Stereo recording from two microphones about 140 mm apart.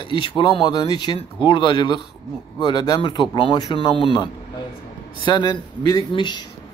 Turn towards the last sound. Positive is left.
turn(degrees=35)  # may be behind; listen again after turning